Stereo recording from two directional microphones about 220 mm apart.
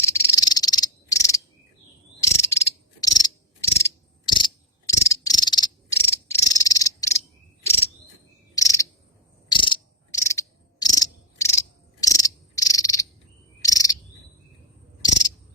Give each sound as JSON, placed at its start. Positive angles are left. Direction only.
{"t": 0.0, "sound": "cricket", "side_deg": 15}
{"t": 2.2, "sound": "frog", "side_deg": 15}
{"t": 4.3, "sound": "cricket", "side_deg": 20}
{"t": 8.5, "sound": "cricket", "side_deg": 15}
{"t": 9.5, "sound": "frog", "side_deg": 20}
{"t": 13.6, "sound": "bird vocalization", "side_deg": 15}